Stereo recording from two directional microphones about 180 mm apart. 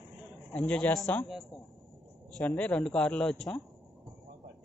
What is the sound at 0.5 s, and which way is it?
Speech, 10° left (ahead or behind).